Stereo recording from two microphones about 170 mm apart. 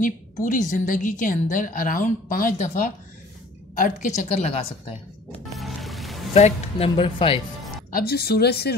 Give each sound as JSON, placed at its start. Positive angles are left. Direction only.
{"t": 0.0, "sound": "a woman's voice", "side_deg": 50}
{"t": 5.6, "sound": "music", "side_deg": 0}
{"t": 6.3, "sound": "speech", "side_deg": 40}
{"t": 7.9, "sound": "a woman's voice", "side_deg": 65}